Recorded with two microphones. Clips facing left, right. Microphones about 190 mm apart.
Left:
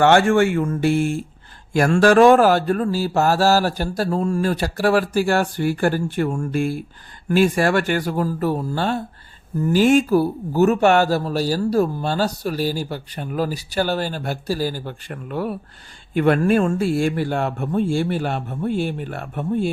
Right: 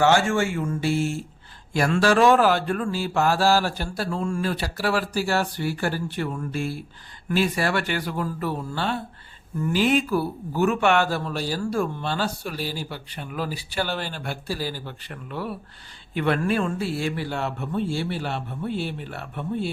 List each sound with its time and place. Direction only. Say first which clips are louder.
0.0 s speech: left 5 dB; 60° left (ahead or behind)
1.7 s mantra: left 6 dB; 50° left (ahead or behind)
9.6 s speech: left 6 dB; 40° left (ahead or behind)
16.1 s mantra: left 6 dB; 45° left (ahead or behind)